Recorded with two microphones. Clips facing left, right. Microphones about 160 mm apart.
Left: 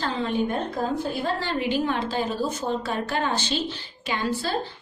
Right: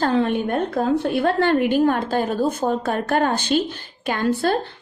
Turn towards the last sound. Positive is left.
turn(degrees=-55)  # may be behind; listen again after turning